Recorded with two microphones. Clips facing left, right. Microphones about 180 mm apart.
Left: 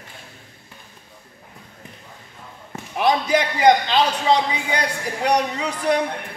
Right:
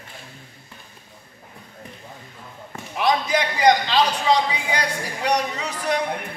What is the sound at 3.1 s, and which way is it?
A man's voice, 25° left (ahead or behind).